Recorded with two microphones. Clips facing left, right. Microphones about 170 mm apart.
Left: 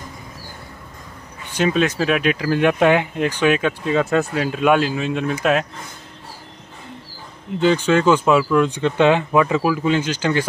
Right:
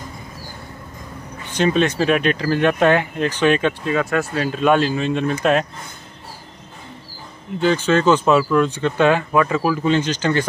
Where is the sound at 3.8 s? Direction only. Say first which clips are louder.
Left 2 dB; 20° left (ahead or behind); by 5.6 s 5° left (ahead or behind).